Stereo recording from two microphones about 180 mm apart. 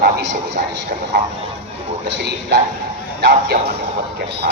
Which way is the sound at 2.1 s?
70° right (ahead or behind).